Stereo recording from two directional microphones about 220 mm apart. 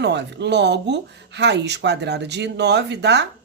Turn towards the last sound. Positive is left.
turn(degrees=-50)  # may be behind; listen again after turning